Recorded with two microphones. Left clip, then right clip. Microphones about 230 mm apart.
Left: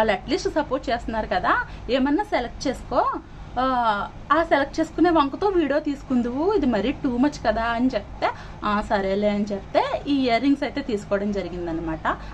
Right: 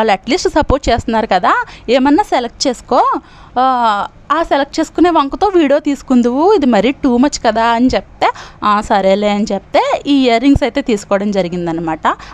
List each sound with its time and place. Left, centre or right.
0.0 s a woman's voice: right